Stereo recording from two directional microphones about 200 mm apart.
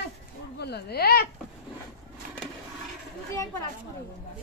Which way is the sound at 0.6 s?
55° left (ahead or behind).